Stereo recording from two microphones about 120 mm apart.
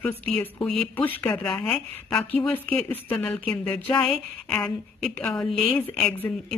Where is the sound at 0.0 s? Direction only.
10° left (ahead or behind).